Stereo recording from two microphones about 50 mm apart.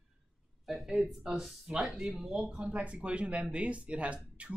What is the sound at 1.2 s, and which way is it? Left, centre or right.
Speech, centre.